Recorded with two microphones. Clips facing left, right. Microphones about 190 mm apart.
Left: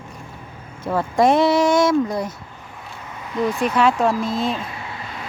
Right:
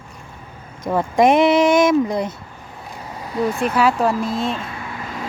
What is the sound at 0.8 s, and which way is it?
Speech, 15° right (ahead or behind).